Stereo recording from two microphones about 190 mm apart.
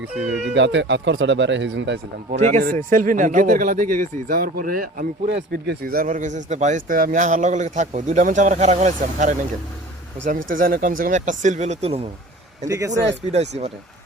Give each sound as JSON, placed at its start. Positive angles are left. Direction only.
{"t": 0.5, "sound": "speech", "side_deg": -70}
{"t": 2.3, "sound": "speech", "side_deg": -40}
{"t": 12.6, "sound": "speech", "side_deg": -15}
{"t": 13.2, "sound": "speech", "side_deg": -35}